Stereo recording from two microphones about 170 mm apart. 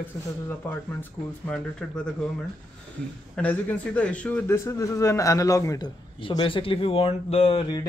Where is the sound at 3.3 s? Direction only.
10° left (ahead or behind); by 7.6 s 35° left (ahead or behind).